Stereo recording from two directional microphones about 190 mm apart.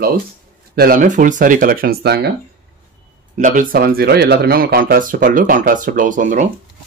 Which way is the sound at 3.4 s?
40° right (ahead or behind).